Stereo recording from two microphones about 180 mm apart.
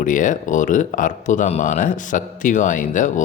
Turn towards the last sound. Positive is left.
turn(degrees=45)  # may be behind; listen again after turning